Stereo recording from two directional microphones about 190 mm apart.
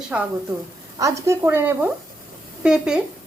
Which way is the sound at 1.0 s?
15° right (ahead or behind).